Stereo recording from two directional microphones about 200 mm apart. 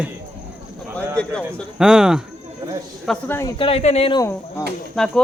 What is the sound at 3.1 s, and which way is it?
Speech, 10° left (ahead or behind).